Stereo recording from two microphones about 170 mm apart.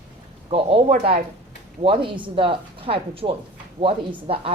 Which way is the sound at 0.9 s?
60° right (ahead or behind).